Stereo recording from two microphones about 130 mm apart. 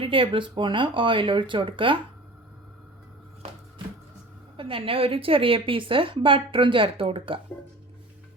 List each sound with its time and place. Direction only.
0.0 s speech: 40° right (ahead or behind)
4.5 s a woman's voice: 45° right (ahead or behind)